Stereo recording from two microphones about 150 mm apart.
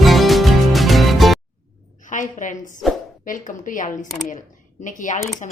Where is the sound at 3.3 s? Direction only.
65° left (ahead or behind).